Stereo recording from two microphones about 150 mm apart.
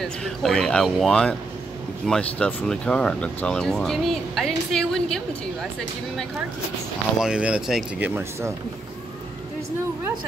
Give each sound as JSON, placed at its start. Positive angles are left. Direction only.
{"t": 0.2, "sound": "speech", "side_deg": 5}
{"t": 7.2, "sound": "speech", "side_deg": -5}
{"t": 8.1, "sound": "speech", "side_deg": -20}